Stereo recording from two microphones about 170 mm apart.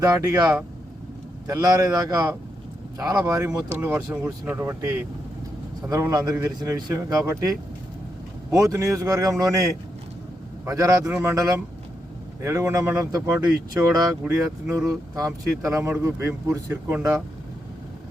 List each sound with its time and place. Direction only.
0.0 s speech: 20° right (ahead or behind)
8.5 s speech: 15° right (ahead or behind)
10.7 s speech: 20° right (ahead or behind)